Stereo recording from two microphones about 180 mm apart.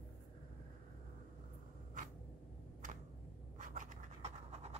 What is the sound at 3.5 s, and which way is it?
Scratch, 45° right (ahead or behind).